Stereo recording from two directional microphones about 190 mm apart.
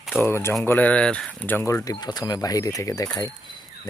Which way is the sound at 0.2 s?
15° left (ahead or behind).